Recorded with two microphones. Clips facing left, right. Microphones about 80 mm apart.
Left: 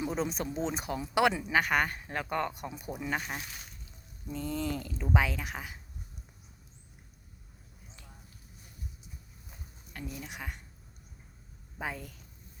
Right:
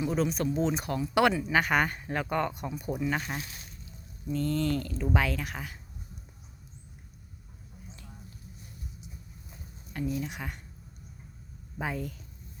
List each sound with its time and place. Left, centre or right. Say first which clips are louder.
0.2 s speech: right 5 dB; left
1.5 s speech: right 2 dB; centre
9.9 s speech: right 9 dB; centre
11.8 s speech: right 4 dB; centre